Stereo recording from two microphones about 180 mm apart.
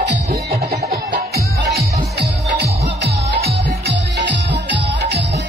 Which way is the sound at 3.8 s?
70° right (ahead or behind).